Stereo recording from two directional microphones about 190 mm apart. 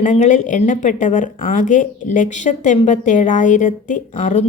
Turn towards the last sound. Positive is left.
turn(degrees=40)  # may be behind; listen again after turning